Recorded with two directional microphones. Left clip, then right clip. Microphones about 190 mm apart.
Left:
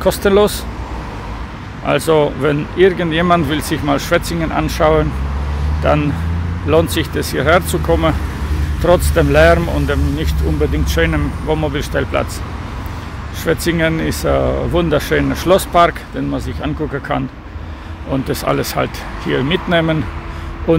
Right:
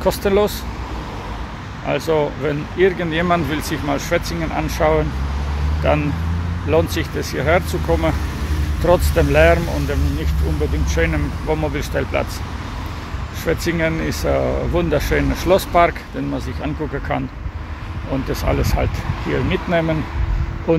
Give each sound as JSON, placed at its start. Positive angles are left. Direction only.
{"t": 0.0, "sound": "speech", "side_deg": 15}
{"t": 1.9, "sound": "speech", "side_deg": 30}
{"t": 13.5, "sound": "speech", "side_deg": 15}